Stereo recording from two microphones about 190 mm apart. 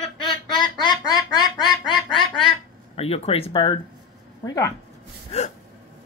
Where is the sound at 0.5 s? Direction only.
25° left (ahead or behind).